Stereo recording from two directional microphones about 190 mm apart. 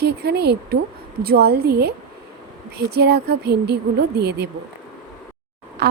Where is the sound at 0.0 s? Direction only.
60° right (ahead or behind).